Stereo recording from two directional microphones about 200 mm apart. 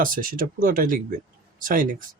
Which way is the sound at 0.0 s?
45° right (ahead or behind).